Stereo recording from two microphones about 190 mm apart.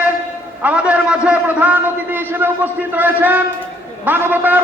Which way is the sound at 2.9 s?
10° right (ahead or behind).